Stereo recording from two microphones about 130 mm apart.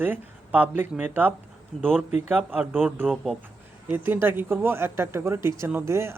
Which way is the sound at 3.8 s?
15° right (ahead or behind).